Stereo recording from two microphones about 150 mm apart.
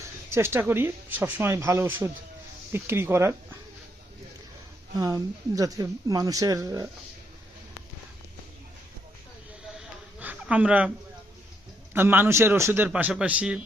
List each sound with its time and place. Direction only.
0.0 s speech: 15° right (ahead or behind)
4.9 s speech: 25° right (ahead or behind)
9.7 s a sound: 5° right (ahead or behind)
11.9 s speech: 15° right (ahead or behind)